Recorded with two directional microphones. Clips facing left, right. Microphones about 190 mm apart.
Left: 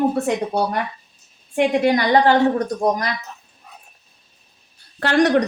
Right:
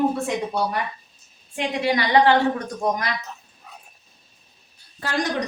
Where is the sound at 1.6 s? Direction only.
50° left (ahead or behind).